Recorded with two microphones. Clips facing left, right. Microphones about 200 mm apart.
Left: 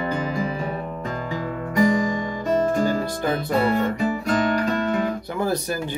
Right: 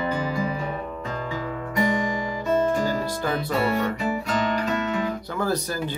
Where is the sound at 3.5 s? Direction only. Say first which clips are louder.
Left 3 dB; 50° left (ahead or behind).